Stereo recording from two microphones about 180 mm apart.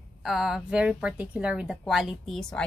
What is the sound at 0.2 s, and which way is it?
A woman's voice, centre (ahead or behind).